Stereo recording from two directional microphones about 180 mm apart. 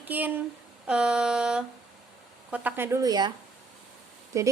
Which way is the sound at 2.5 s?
10° right (ahead or behind).